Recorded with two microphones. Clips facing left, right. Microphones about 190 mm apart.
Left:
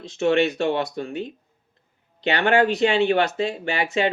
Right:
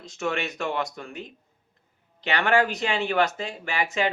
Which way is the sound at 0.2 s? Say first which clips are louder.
Left 9 dB; 30° left (ahead or behind).